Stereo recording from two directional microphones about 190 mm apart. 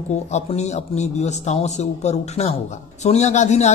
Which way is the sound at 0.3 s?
35° left (ahead or behind).